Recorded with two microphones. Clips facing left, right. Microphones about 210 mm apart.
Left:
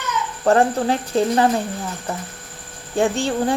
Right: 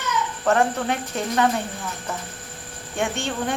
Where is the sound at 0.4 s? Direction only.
35° left (ahead or behind).